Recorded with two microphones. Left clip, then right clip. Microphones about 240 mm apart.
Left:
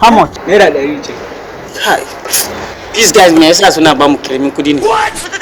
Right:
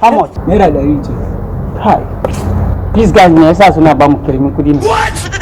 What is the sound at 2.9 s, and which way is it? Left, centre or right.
Speech, left.